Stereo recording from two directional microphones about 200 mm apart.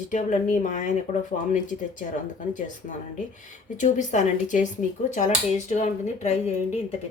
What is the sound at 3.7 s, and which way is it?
Speech, 40° left (ahead or behind).